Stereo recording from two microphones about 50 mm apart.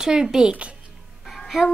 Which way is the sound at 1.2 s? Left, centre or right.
Centre.